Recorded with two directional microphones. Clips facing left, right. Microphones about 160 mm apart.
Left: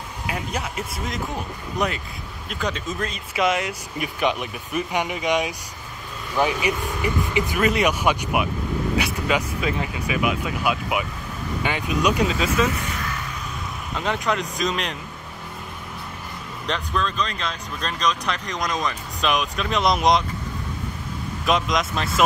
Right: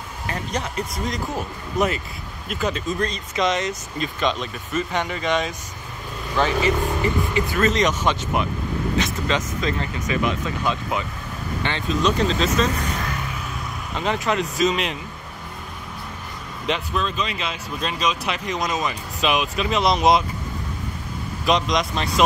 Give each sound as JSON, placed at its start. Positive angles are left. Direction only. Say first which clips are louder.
{"t": 0.3, "sound": "speech", "louder": "right 1 dB", "side_deg": 5}
{"t": 13.9, "sound": "speech", "louder": "right 2 dB", "side_deg": 0}
{"t": 16.6, "sound": "speech", "louder": "right 1 dB", "side_deg": -5}
{"t": 21.5, "sound": "speech", "louder": "right 1 dB", "side_deg": 0}